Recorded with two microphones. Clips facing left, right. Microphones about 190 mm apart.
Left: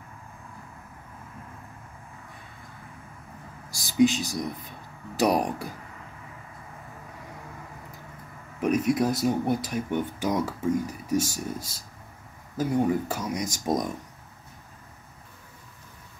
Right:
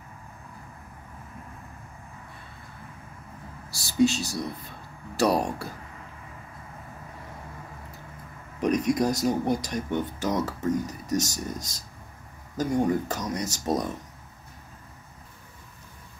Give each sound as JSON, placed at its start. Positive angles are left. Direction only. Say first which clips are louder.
{"t": 3.7, "sound": "speech", "louder": "left 1 dB", "side_deg": 15}
{"t": 8.5, "sound": "speech", "louder": "even", "side_deg": 5}